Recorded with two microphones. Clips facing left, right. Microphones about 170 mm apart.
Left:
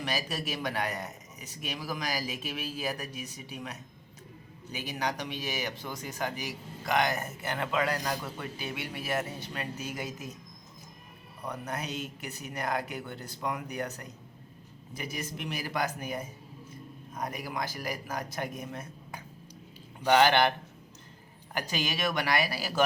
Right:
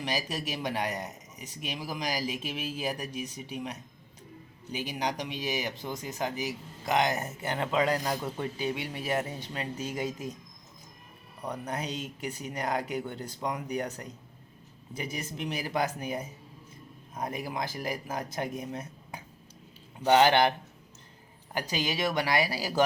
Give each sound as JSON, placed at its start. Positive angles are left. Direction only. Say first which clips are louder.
{"t": 0.0, "sound": "speech", "louder": "right 1 dB", "side_deg": -20}
{"t": 4.8, "sound": "speech", "louder": "right 1 dB", "side_deg": -20}
{"t": 11.4, "sound": "speech", "louder": "right 2 dB", "side_deg": -20}
{"t": 21.5, "sound": "speech", "louder": "right 2 dB", "side_deg": -15}